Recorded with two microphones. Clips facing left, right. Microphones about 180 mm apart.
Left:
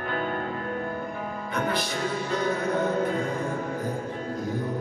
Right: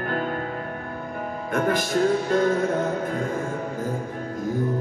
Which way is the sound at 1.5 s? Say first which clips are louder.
Right 6 dB; 50° right (ahead or behind).